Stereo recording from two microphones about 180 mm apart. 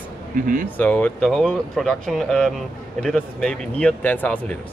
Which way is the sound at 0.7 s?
10° left (ahead or behind).